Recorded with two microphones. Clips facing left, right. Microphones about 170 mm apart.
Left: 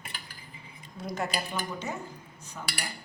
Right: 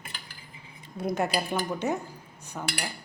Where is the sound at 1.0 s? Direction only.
60° right (ahead or behind).